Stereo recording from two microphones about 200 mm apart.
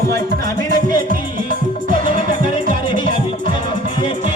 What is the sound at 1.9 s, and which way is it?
Music, 45° right (ahead or behind).